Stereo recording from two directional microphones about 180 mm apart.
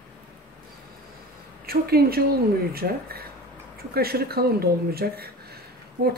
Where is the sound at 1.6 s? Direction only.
60° right (ahead or behind).